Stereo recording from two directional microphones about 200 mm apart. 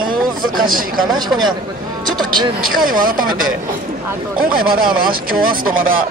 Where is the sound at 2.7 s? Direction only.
45° right (ahead or behind).